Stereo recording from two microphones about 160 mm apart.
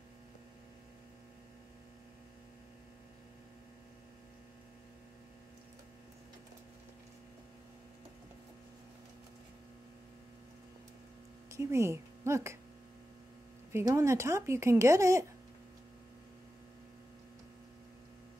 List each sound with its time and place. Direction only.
11.5 s a woman's voice: 15° right (ahead or behind)
13.7 s speech: 15° right (ahead or behind)